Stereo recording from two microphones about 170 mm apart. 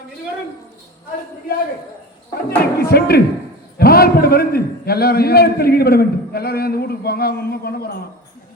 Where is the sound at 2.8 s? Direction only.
65° left (ahead or behind).